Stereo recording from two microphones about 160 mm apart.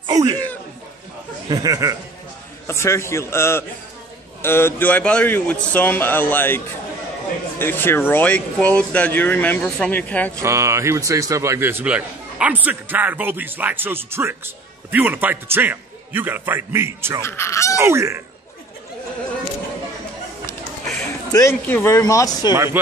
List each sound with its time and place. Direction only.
0.0 s a sound: 25° right (ahead or behind)
1.5 s speech: 20° right (ahead or behind)
2.6 s speech: 15° left (ahead or behind)
10.4 s a man's voice: 20° right (ahead or behind)
17.2 s speech: 15° left (ahead or behind)
17.7 s a man's voice: 15° right (ahead or behind)
21.3 s speech: 20° left (ahead or behind)
22.5 s a man's voice: 15° right (ahead or behind)